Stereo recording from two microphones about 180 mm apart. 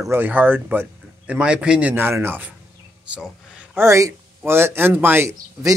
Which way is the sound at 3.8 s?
15° right (ahead or behind).